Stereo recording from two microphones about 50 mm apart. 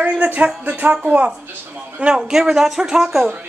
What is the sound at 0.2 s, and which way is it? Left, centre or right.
Music, right.